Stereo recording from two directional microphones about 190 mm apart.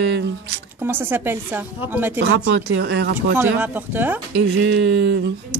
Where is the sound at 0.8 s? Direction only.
10° right (ahead or behind).